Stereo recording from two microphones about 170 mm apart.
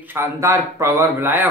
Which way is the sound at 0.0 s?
15° right (ahead or behind).